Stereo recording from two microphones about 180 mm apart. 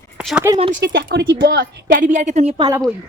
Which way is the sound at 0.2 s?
Centre (ahead or behind).